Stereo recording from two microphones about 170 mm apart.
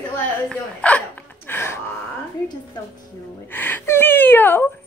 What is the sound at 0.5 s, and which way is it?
Speech, 10° left (ahead or behind).